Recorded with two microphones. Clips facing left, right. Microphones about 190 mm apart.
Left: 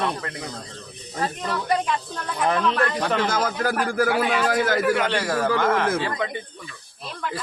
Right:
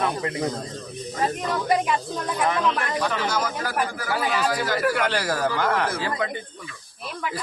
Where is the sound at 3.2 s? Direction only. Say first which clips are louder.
Left 3 dB; 50° left (ahead or behind).